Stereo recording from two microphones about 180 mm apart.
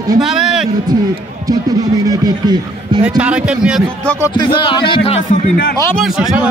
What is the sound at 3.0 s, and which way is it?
Speech, 5° right (ahead or behind).